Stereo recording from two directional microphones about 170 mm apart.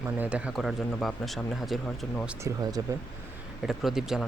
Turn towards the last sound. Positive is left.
turn(degrees=0)  # may be behind; listen again after turning